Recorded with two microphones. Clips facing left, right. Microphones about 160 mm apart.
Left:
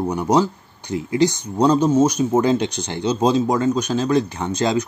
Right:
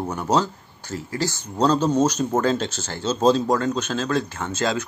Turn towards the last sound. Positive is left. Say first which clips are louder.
# left 4 dB
turn(degrees=15)  # may be behind; listen again after turning